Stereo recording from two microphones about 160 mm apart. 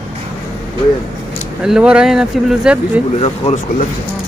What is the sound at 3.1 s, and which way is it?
Speech, 40° left (ahead or behind).